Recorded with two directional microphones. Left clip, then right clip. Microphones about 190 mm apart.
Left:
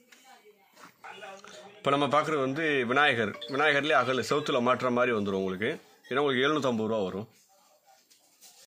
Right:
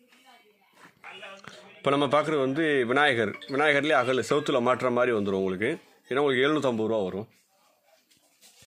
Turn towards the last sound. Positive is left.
turn(degrees=-30)  # may be behind; listen again after turning